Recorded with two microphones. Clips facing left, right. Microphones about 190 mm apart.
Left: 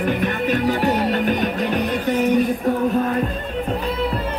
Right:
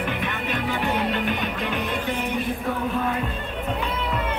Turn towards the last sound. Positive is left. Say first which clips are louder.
# left 8 dB
turn(degrees=40)  # may be behind; listen again after turning